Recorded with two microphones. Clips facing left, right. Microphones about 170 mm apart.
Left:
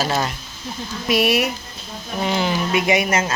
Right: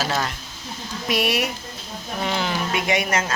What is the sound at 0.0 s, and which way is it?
Speech, 25° left (ahead or behind).